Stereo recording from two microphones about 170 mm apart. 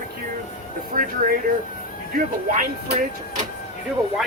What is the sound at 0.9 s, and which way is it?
Speech, 55° right (ahead or behind).